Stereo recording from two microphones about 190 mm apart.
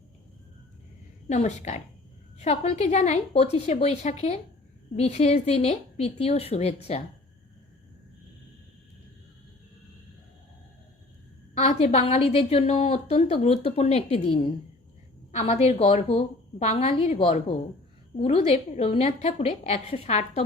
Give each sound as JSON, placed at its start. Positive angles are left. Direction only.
{"t": 1.3, "sound": "a woman's voice", "side_deg": 40}
{"t": 11.5, "sound": "a woman's voice", "side_deg": 35}